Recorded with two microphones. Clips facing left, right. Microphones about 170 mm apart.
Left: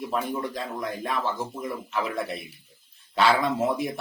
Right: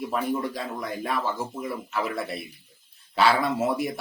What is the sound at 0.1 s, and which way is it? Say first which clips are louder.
Speech: right 1 dB; 5° right (ahead or behind).